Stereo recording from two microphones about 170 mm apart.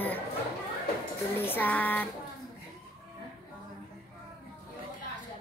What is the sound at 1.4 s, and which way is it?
Speech, 10° left (ahead or behind).